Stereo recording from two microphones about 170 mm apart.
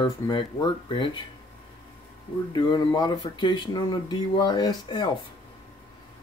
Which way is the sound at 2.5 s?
25° left (ahead or behind).